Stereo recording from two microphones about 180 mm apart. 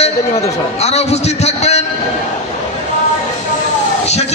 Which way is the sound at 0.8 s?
35° left (ahead or behind).